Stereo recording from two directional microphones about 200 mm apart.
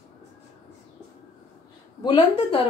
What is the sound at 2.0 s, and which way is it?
Speech, 25° left (ahead or behind).